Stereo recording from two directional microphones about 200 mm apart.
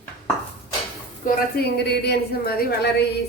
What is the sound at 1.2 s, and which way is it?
A woman's voice, 55° left (ahead or behind).